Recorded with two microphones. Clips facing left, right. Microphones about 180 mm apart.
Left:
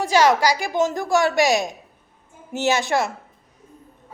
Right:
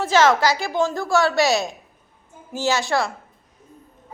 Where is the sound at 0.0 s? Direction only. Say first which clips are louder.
Even; 15° left (ahead or behind).